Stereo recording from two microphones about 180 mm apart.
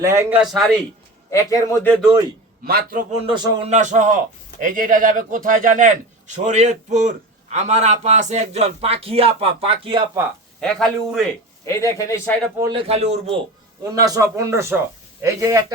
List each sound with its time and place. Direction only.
0.0 s a man's voice: 15° right (ahead or behind); by 0.8 s centre (ahead or behind)
1.3 s speech: 20° left (ahead or behind)
2.6 s a man's voice: 55° right (ahead or behind)
3.3 s speech: 25° right (ahead or behind)
3.7 s a man's voice: 45° right (ahead or behind)
10.6 s speech: 5° left (ahead or behind)
11.6 s speech: 15° left (ahead or behind)
12.5 s speech: 25° right (ahead or behind)
12.9 s a man's voice: 35° right (ahead or behind)
13.8 s a man's voice: 20° right (ahead or behind)